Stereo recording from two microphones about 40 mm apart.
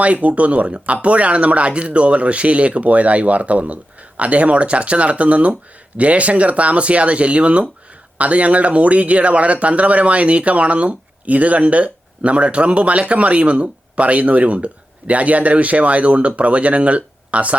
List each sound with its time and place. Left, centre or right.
0.0 s speech: right